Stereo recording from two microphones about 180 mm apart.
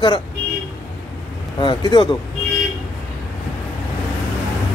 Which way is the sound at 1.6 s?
25° left (ahead or behind).